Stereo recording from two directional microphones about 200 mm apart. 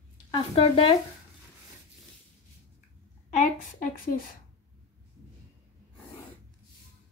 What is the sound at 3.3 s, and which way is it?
A woman's voice, 40° left (ahead or behind).